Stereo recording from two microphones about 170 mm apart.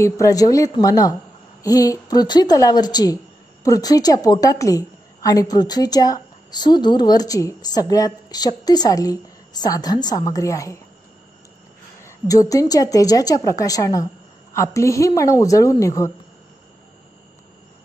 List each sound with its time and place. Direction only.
0.0 s a woman's voice: 20° left (ahead or behind)
12.0 s a woman's voice: 20° left (ahead or behind)